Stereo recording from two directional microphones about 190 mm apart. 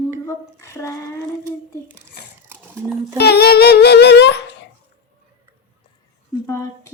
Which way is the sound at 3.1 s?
60° left (ahead or behind).